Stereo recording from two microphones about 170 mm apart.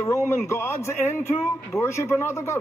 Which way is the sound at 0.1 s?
15° left (ahead or behind).